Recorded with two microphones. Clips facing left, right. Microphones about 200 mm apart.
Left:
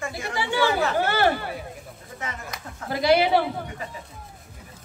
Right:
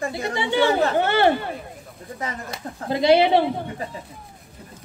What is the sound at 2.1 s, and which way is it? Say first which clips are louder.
Speech: right 4 dB; 35° right (ahead or behind).